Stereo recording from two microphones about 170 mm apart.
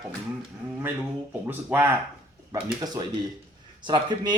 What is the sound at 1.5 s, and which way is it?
Speech, 10° right (ahead or behind).